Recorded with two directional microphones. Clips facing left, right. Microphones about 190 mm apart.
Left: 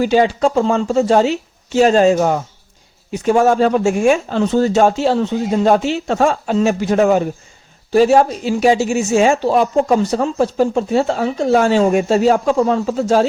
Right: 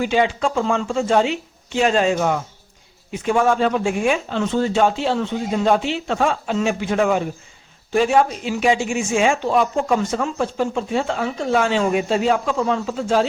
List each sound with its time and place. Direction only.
0.0 s speech: 40° left (ahead or behind)